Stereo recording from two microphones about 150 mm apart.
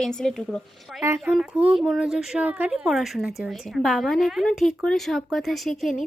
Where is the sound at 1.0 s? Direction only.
15° right (ahead or behind).